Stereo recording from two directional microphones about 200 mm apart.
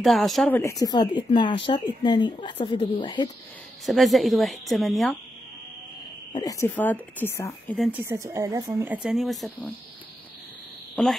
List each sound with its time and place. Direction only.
0.0 s a woman's voice: centre (ahead or behind)
0.6 s speech: 15° left (ahead or behind)
3.8 s a woman's voice: centre (ahead or behind)
6.3 s speech: 15° left (ahead or behind)
7.7 s a woman's voice: centre (ahead or behind)
8.0 s speech: 15° right (ahead or behind)
11.0 s a woman's voice: 5° left (ahead or behind)